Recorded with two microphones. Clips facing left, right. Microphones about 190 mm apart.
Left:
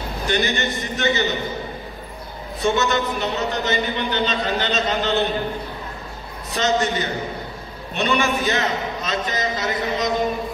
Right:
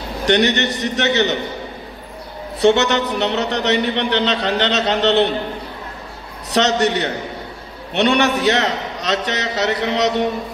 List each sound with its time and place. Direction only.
0.2 s a man's voice: 75° right (ahead or behind)
2.6 s a man's voice: 75° right (ahead or behind)
6.5 s a man's voice: 75° right (ahead or behind)